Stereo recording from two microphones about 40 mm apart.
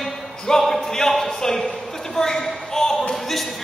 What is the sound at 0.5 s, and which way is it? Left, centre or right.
A man's voice, centre.